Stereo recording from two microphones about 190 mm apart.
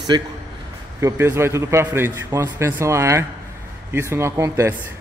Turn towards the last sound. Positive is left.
turn(degrees=-15)  # may be behind; listen again after turning